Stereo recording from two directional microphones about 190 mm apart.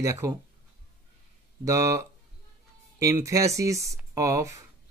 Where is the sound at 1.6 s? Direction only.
15° right (ahead or behind).